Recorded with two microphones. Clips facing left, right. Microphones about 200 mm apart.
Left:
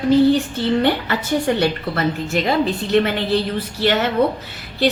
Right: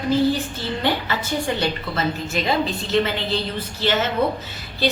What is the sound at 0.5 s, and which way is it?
A woman's voice, 60° left (ahead or behind).